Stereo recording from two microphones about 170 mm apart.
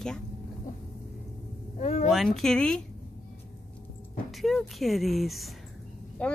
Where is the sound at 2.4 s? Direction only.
5° left (ahead or behind).